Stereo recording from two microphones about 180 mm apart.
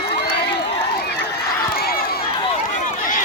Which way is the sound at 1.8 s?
60° left (ahead or behind).